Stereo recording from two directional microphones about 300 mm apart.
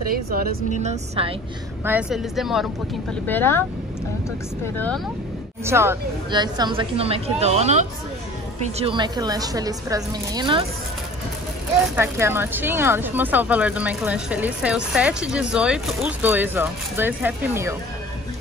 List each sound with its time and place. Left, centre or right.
0.1 s a woman's voice: right
1.9 s speech: centre
4.7 s speech: centre
5.7 s a woman's voice: centre
11.9 s speech: centre